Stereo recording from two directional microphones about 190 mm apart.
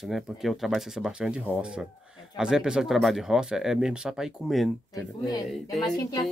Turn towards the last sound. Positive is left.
turn(degrees=20)  # may be behind; listen again after turning